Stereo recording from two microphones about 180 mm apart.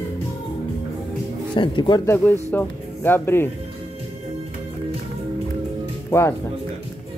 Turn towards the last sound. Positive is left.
turn(degrees=15)  # may be behind; listen again after turning